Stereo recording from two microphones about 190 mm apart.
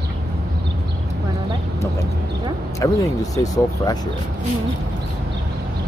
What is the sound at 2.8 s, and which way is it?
Speech, 20° left (ahead or behind).